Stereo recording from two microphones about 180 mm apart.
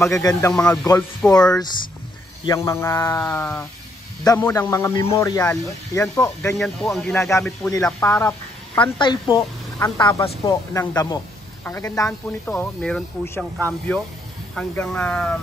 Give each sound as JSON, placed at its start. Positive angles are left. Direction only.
{"t": 0.0, "sound": "speech", "side_deg": 20}
{"t": 0.5, "sound": "speech", "side_deg": 5}
{"t": 2.4, "sound": "speech", "side_deg": 15}
{"t": 6.6, "sound": "speech", "side_deg": 5}
{"t": 7.2, "sound": "speech", "side_deg": 15}
{"t": 8.9, "sound": "speech", "side_deg": 25}
{"t": 12.1, "sound": "speech", "side_deg": 5}